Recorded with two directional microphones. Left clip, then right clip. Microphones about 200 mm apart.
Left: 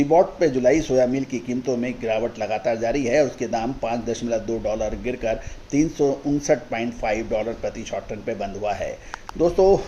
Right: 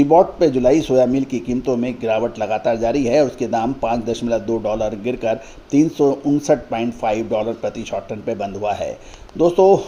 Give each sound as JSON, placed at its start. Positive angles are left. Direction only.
{"t": 0.0, "sound": "a man's voice", "side_deg": -30}